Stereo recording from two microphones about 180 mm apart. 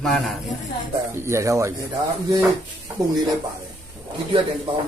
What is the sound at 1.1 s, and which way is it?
Speech, 15° right (ahead or behind).